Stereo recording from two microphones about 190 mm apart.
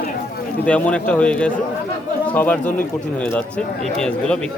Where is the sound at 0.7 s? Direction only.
5° left (ahead or behind).